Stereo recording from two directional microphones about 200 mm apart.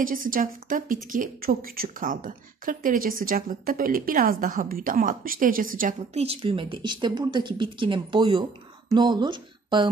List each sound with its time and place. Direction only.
0.0 s a woman's voice: 45° right (ahead or behind); by 9.8 s 20° right (ahead or behind)